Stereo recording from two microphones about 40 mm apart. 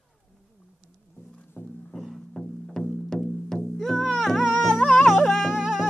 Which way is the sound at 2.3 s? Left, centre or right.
Centre.